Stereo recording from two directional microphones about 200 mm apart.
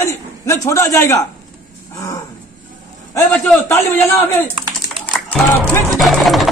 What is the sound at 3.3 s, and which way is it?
A woman's voice, 10° left (ahead or behind).